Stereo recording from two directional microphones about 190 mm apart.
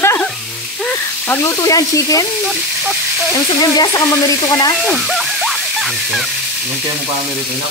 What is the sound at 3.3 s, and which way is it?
Speech, 20° left (ahead or behind).